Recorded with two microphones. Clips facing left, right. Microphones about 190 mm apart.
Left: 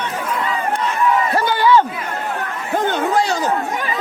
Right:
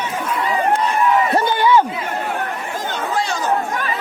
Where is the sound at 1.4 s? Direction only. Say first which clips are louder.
Even; 20° right (ahead or behind).